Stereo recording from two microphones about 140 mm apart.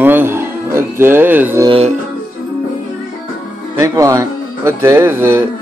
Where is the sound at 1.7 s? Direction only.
45° right (ahead or behind).